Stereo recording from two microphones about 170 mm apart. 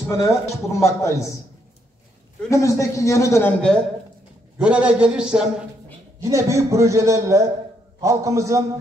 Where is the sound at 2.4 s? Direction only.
20° left (ahead or behind).